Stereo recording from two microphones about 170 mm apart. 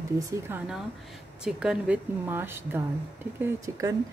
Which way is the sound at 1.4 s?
5° right (ahead or behind).